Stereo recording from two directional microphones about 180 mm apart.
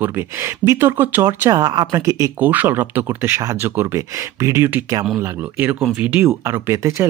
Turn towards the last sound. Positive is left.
turn(degrees=-15)  # may be behind; listen again after turning